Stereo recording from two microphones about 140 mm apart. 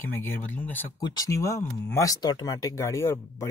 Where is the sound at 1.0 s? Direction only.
25° left (ahead or behind).